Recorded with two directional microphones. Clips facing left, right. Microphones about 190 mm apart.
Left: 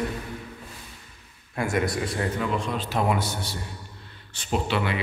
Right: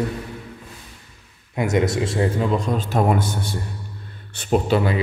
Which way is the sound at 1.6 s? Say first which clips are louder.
Right 5 dB; 20° right (ahead or behind).